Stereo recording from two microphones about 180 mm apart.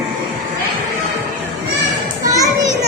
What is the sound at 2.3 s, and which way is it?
Children playing, 20° right (ahead or behind).